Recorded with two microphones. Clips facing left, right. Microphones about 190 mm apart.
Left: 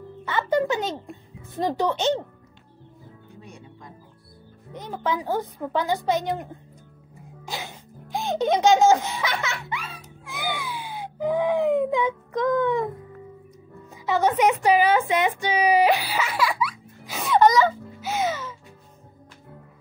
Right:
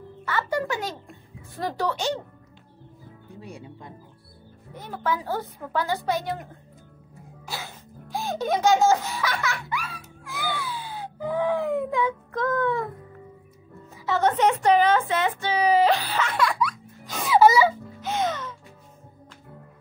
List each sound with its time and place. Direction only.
0.2 s music: 20° left (ahead or behind)
1.5 s a woman's voice: 20° left (ahead or behind)
3.3 s music: 30° right (ahead or behind)
4.7 s a woman's voice: 20° left (ahead or behind)
7.2 s music: 20° left (ahead or behind)
14.0 s a sound: 10° left (ahead or behind); by 17.7 s 10° right (ahead or behind)
18.0 s music: 5° left (ahead or behind)